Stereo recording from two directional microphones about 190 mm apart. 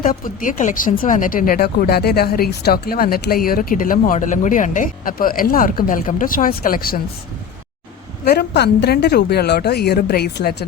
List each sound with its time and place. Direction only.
0.0 s speech: 45° left (ahead or behind)
8.2 s a woman's voice: 55° left (ahead or behind)